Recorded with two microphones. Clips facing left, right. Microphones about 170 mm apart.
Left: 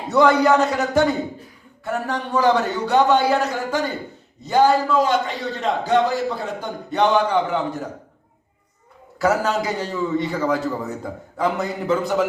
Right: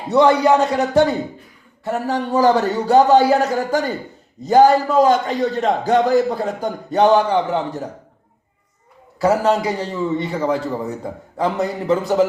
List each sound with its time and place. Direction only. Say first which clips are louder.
0.1 s a man's voice: right 2 dB; 30° right (ahead or behind)
9.2 s a man's voice: right 4 dB; 30° right (ahead or behind)